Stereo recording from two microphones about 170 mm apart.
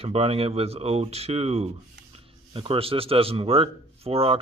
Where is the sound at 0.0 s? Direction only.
35° right (ahead or behind).